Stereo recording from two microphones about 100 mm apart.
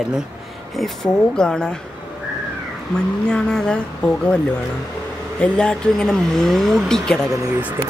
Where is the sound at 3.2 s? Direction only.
5° left (ahead or behind).